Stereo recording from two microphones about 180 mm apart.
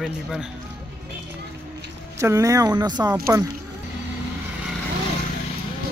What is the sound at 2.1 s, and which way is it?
Speech, 15° right (ahead or behind).